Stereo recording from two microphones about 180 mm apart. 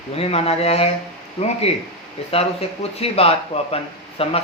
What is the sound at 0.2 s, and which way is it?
Speech, 35° left (ahead or behind).